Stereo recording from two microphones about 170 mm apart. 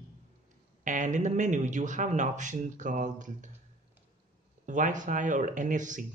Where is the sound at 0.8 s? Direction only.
45° right (ahead or behind).